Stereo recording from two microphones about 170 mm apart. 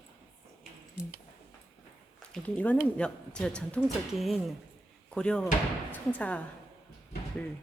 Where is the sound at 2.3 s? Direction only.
5° left (ahead or behind).